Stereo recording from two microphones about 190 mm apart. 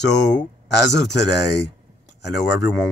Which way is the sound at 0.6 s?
65° left (ahead or behind).